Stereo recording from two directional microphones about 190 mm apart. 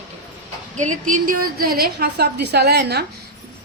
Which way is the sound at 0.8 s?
40° right (ahead or behind).